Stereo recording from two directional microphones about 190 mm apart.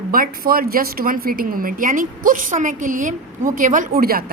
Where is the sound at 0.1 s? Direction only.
50° right (ahead or behind).